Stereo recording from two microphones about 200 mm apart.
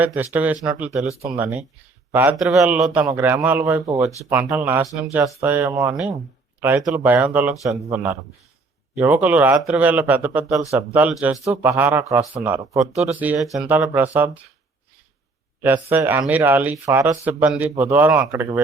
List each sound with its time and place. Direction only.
0.0 s a man's voice: 10° right (ahead or behind)
2.1 s a man's voice: 5° right (ahead or behind)
15.6 s a man's voice: 10° right (ahead or behind)